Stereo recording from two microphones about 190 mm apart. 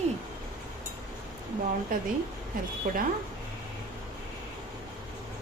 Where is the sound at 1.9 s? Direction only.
45° right (ahead or behind).